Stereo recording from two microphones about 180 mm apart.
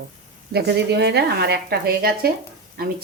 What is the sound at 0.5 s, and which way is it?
Speech, 65° right (ahead or behind).